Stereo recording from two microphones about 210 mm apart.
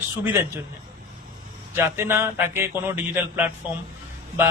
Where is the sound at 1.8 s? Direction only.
10° right (ahead or behind).